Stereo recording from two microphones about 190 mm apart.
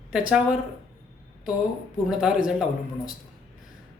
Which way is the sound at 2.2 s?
5° right (ahead or behind).